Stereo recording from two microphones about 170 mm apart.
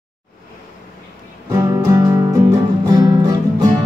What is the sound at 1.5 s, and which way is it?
Music, 20° right (ahead or behind).